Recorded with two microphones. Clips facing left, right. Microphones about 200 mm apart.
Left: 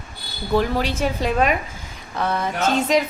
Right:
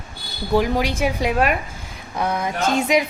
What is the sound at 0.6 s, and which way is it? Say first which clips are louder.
Speech: right 1 dB; 10° right (ahead or behind).